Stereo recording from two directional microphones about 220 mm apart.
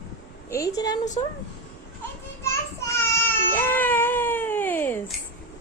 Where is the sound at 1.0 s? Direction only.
35° left (ahead or behind).